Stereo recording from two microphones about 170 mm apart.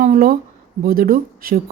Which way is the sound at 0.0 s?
55° right (ahead or behind).